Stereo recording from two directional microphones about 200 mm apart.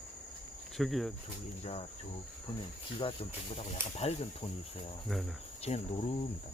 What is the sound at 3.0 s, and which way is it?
Speech, 30° left (ahead or behind).